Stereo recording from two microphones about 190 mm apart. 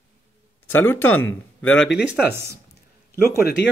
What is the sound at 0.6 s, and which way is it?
Speech, 10° left (ahead or behind).